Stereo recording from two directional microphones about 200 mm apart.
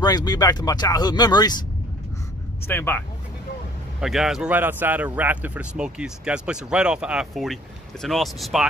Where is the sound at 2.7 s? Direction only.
10° left (ahead or behind).